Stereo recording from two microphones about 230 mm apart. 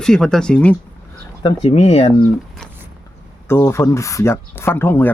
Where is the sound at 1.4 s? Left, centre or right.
Left.